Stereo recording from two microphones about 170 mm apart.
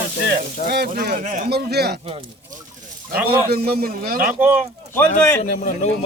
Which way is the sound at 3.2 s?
65° right (ahead or behind).